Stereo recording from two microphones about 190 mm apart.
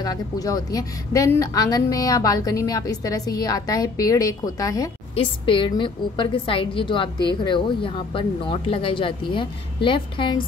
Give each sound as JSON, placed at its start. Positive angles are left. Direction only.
{"t": 0.0, "sound": "speech", "side_deg": 20}